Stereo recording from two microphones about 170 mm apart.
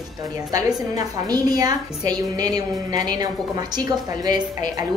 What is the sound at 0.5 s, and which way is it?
A woman's voice, 20° right (ahead or behind).